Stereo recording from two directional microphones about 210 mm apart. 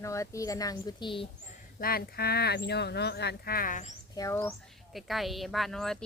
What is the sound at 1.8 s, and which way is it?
Speech, 45° left (ahead or behind).